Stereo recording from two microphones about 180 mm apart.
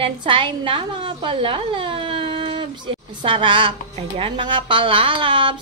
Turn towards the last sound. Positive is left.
turn(degrees=-25)  # may be behind; listen again after turning